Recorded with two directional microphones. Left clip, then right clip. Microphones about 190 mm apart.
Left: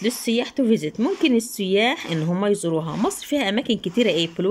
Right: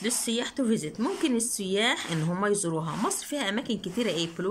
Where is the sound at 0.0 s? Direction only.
10° left (ahead or behind).